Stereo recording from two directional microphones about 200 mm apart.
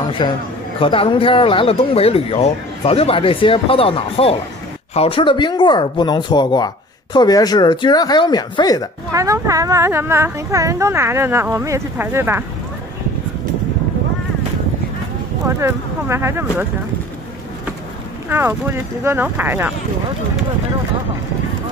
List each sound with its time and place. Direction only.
0.2 s speech: 25° left (ahead or behind)
9.1 s speech: 15° right (ahead or behind)
15.4 s speech: 15° right (ahead or behind)
18.3 s speech: 10° right (ahead or behind)